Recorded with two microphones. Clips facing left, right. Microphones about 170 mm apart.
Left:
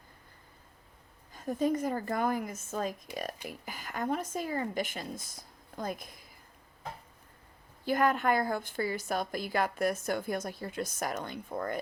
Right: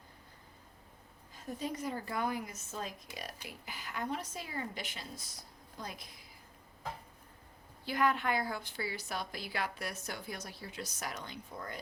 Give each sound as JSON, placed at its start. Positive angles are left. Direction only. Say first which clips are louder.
{"t": 1.3, "sound": "a woman's voice", "louder": "left 10 dB", "side_deg": 50}
{"t": 7.9, "sound": "a woman's voice", "louder": "left 5 dB", "side_deg": 45}